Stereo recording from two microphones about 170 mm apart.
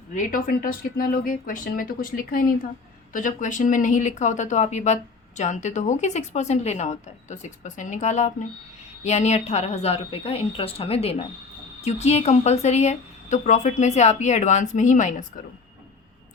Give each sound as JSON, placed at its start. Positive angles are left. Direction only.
{"t": 0.1, "sound": "a woman's voice", "side_deg": 50}